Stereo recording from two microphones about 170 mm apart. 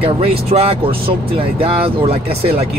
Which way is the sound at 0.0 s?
35° right (ahead or behind).